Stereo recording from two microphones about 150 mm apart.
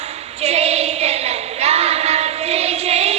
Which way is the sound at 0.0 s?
45° right (ahead or behind).